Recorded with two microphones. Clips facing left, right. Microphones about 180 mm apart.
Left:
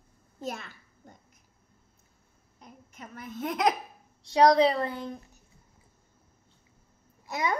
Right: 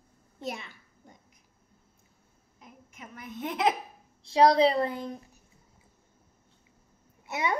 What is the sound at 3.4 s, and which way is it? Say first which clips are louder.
Speech: left 1 dB; 40° left (ahead or behind).